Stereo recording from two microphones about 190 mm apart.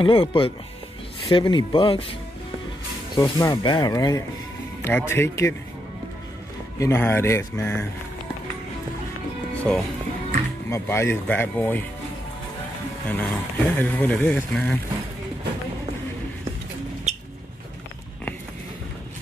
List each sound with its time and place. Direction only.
0.0 s speech: 25° left (ahead or behind)
3.2 s speech: 20° left (ahead or behind)
6.8 s speech: 10° left (ahead or behind)
9.6 s speech: 5° left (ahead or behind)
13.1 s speech: 10° left (ahead or behind)